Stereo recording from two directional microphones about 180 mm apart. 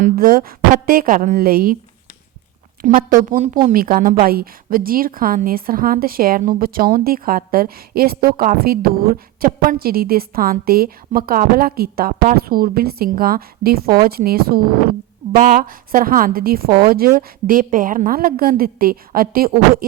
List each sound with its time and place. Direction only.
0.0 s a woman's voice: 50° right (ahead or behind)
3.2 s a woman's voice: 45° right (ahead or behind)